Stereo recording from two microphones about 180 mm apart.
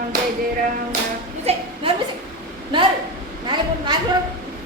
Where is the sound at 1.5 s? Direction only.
35° right (ahead or behind).